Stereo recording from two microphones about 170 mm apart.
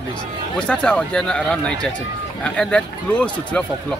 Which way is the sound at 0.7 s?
5° left (ahead or behind).